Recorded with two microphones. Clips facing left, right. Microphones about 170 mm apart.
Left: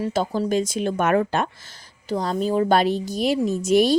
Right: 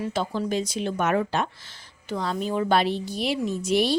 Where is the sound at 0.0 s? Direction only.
40° left (ahead or behind).